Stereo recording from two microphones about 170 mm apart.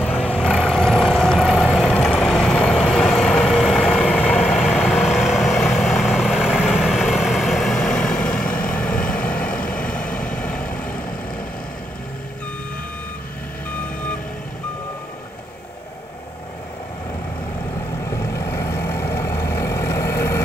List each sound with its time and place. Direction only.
0.0 s vehicle: 10° left (ahead or behind)
5.0 s vehicle: centre (ahead or behind)
18.1 s vehicle: 15° left (ahead or behind)